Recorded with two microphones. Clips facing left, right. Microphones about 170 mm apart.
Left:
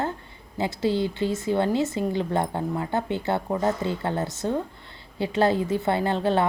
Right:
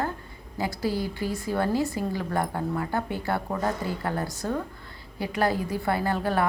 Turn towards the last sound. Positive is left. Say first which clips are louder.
# left 3 dB
turn(degrees=25)  # may be behind; listen again after turning